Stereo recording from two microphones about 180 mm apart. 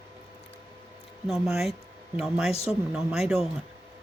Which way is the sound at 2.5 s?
35° left (ahead or behind).